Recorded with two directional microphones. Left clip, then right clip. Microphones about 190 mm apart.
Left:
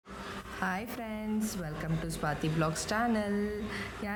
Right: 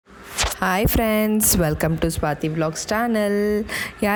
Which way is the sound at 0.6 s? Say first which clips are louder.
Right 14 dB; 50° right (ahead or behind).